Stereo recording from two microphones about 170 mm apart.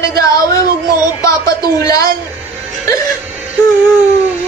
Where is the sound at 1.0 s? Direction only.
20° left (ahead or behind).